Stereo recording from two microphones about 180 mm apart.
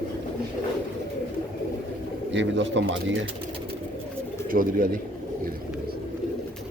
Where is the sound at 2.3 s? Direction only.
90° right.